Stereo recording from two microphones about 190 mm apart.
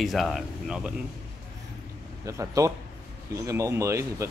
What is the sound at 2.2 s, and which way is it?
Speech, 15° right (ahead or behind).